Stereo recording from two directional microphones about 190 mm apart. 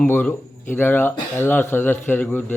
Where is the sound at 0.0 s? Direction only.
10° left (ahead or behind).